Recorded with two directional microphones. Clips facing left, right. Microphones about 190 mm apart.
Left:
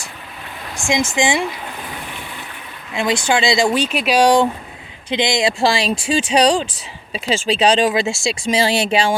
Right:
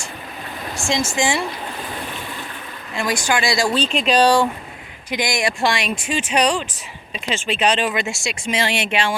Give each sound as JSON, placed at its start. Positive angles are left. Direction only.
{"t": 0.9, "sound": "speech", "side_deg": 15}
{"t": 2.9, "sound": "speech", "side_deg": 20}
{"t": 3.8, "sound": "speech", "side_deg": 5}